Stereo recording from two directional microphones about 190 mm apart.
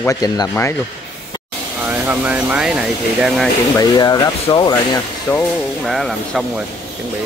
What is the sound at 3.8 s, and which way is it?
Speech, 20° left (ahead or behind).